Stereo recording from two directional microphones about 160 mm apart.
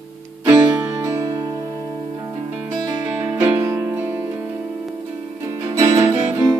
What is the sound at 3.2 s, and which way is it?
Music, 20° right (ahead or behind).